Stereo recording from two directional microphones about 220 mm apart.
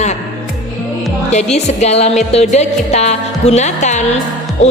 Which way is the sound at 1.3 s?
30° left (ahead or behind).